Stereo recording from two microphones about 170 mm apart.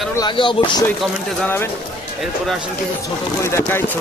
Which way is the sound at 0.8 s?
10° left (ahead or behind).